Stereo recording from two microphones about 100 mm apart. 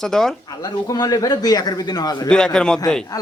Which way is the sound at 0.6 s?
40° left (ahead or behind).